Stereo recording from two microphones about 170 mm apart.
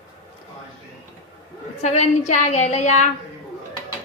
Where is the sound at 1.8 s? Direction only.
45° left (ahead or behind).